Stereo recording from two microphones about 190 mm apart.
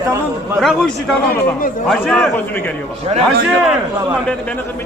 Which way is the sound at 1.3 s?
50° left (ahead or behind).